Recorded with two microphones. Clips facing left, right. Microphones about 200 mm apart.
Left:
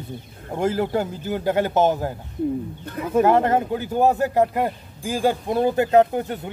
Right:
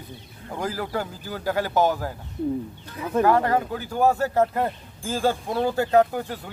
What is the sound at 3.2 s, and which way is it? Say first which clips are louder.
Speech: left 3 dB; 20° left (ahead or behind).